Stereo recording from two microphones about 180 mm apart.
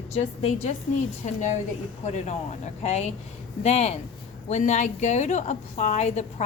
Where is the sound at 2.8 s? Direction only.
40° left (ahead or behind).